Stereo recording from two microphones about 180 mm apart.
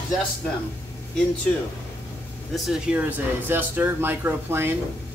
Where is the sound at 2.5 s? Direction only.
Centre (ahead or behind).